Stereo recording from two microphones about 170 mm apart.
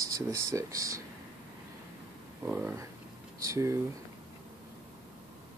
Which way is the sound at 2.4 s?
15° right (ahead or behind).